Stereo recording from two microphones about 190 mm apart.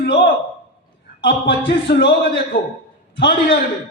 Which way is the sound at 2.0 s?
65° left (ahead or behind).